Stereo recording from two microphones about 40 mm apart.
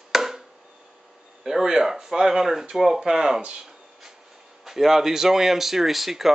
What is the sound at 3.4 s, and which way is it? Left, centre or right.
Speech, right.